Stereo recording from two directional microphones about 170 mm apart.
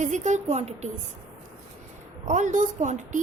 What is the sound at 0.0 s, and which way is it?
Speech, 45° right (ahead or behind).